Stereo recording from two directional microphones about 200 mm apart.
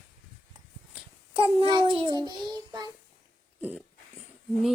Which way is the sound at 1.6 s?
25° right (ahead or behind).